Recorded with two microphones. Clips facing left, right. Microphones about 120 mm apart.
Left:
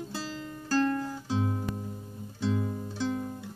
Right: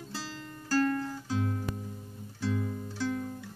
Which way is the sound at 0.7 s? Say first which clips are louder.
Left 1 dB; 20° left (ahead or behind).